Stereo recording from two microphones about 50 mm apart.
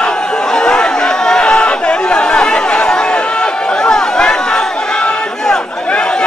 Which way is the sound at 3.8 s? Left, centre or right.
Centre.